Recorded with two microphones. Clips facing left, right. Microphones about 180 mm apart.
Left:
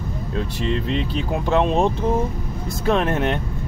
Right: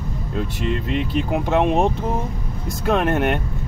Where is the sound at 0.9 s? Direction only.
10° right (ahead or behind).